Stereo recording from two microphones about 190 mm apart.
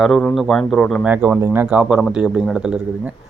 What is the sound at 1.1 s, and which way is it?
Speech, 10° right (ahead or behind).